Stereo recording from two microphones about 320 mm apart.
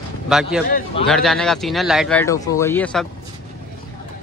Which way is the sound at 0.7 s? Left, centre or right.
Left.